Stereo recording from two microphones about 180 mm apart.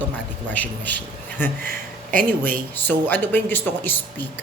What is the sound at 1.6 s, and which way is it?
Speech, 50° right (ahead or behind).